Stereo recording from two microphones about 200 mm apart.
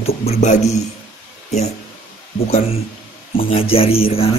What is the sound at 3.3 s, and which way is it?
Speech, 30° left (ahead or behind).